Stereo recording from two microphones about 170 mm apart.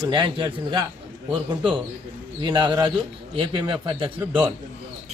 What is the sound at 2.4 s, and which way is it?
A man's voice, 25° right (ahead or behind).